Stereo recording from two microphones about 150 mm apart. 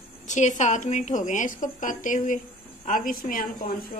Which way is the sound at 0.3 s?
55° left (ahead or behind).